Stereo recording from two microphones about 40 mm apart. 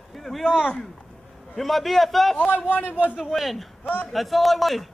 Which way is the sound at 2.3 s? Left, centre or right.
Left.